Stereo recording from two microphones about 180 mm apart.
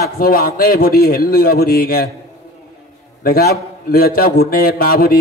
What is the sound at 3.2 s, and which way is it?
A man's voice, 55° left (ahead or behind).